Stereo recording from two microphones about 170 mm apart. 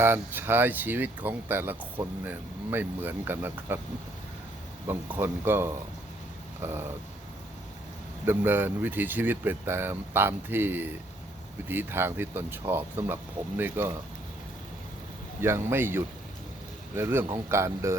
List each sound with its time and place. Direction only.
0.0 s speech: 15° right (ahead or behind)
4.9 s speech: 10° right (ahead or behind)
8.2 s speech: 10° right (ahead or behind)
15.4 s speech: 15° right (ahead or behind)